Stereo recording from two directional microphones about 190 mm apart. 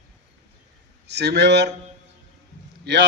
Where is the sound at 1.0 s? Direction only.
60° right (ahead or behind).